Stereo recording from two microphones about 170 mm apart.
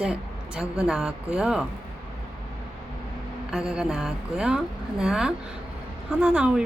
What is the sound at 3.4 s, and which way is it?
A woman's voice, 5° right (ahead or behind).